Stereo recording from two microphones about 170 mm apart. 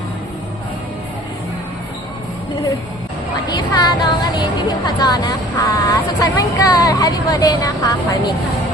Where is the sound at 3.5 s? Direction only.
25° left (ahead or behind).